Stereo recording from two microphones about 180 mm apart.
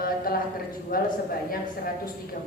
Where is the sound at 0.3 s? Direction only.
55° left (ahead or behind).